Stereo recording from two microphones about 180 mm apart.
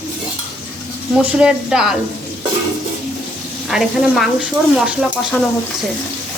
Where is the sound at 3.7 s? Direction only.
Centre (ahead or behind).